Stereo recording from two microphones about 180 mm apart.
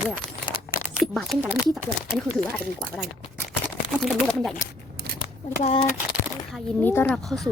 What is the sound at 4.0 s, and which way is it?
Speech, centre (ahead or behind).